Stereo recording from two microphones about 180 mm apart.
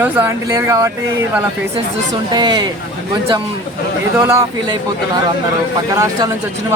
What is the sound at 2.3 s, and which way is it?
Speech, 25° right (ahead or behind).